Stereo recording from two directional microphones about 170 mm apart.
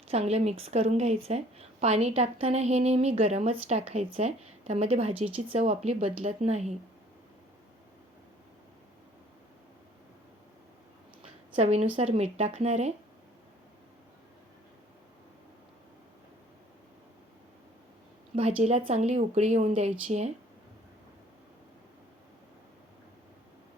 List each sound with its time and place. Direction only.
0.1 s a woman's voice: 40° right (ahead or behind)
11.5 s a woman's voice: 40° right (ahead or behind)
18.6 s a woman's voice: 40° right (ahead or behind)